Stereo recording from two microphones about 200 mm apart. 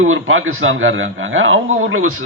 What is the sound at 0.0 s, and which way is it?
A man's voice, 90° right.